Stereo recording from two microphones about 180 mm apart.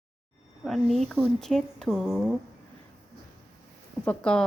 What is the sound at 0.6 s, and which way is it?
Speech, centre (ahead or behind).